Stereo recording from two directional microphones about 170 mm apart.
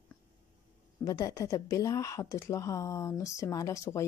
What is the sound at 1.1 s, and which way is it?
Speech, 20° left (ahead or behind).